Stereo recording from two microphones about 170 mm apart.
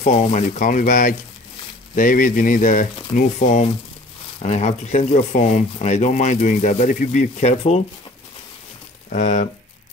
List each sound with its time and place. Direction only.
0.0 s speech: 40° left (ahead or behind)
9.1 s speech: 45° left (ahead or behind)